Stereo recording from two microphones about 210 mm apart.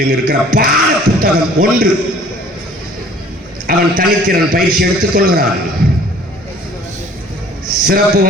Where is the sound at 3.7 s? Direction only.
45° right (ahead or behind).